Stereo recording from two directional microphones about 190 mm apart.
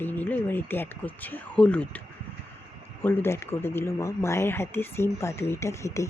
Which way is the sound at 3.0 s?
10° left (ahead or behind).